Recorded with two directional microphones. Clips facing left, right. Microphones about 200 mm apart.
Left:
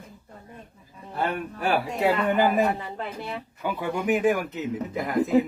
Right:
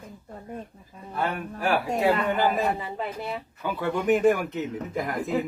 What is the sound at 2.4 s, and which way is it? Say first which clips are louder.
Speech: left 3 dB; 15° left (ahead or behind).